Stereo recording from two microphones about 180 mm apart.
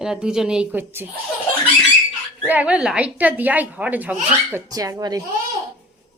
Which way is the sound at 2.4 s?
5° right (ahead or behind).